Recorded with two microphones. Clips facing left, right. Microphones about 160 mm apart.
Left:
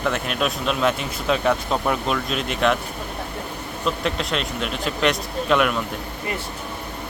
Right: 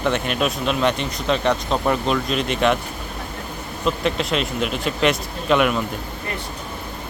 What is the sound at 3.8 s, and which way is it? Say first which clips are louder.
Speech: right 3 dB; centre (ahead or behind).